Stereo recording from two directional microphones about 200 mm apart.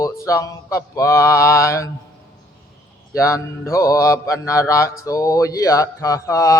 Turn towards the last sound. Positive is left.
turn(degrees=15)  # may be behind; listen again after turning